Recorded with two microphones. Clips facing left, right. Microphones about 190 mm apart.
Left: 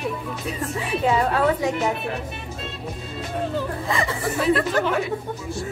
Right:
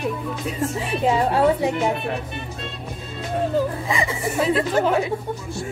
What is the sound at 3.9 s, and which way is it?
Speech, 25° right (ahead or behind).